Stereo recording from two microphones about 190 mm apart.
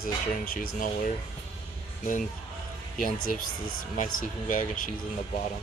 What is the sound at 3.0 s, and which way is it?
Speech, 45° left (ahead or behind).